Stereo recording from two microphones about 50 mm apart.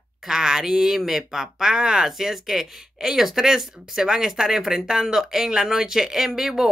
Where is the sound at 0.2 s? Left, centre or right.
Centre.